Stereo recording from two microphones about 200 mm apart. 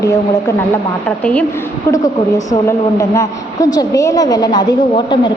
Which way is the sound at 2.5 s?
15° left (ahead or behind).